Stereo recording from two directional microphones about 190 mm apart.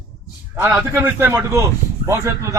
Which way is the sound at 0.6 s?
10° right (ahead or behind).